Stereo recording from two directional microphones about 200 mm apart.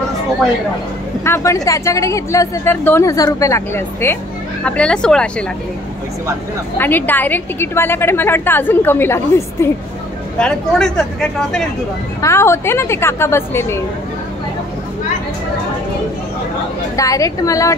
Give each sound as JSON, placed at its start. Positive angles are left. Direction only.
{"t": 1.2, "sound": "a woman's voice", "side_deg": 15}
{"t": 6.8, "sound": "a woman's voice", "side_deg": 10}
{"t": 12.2, "sound": "a woman's voice", "side_deg": 15}
{"t": 16.9, "sound": "a woman's voice", "side_deg": 15}